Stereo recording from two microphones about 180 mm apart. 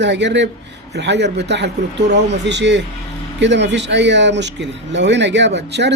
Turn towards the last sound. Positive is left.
turn(degrees=-70)  # may be behind; listen again after turning